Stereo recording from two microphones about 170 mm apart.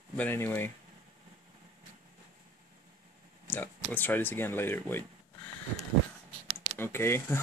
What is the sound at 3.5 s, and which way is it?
Speech, 10° left (ahead or behind).